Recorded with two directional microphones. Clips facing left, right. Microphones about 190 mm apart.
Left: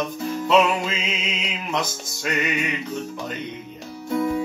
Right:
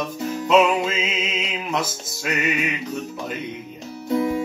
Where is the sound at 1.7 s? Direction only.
5° right (ahead or behind).